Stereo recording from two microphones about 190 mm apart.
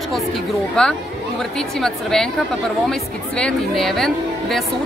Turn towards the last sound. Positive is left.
turn(degrees=0)  # may be behind; listen again after turning